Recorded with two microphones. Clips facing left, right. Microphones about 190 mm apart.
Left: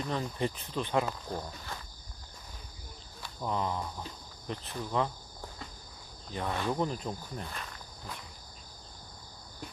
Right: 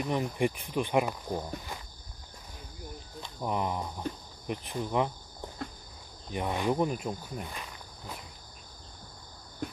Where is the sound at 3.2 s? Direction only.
15° right (ahead or behind).